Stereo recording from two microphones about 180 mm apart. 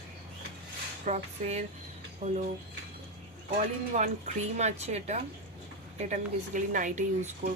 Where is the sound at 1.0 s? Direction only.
40° right (ahead or behind).